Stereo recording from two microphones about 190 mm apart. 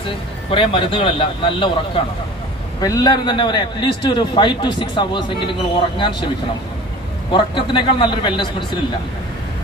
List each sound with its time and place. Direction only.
0.5 s a man's voice: 25° left (ahead or behind)
7.3 s a man's voice: 25° left (ahead or behind)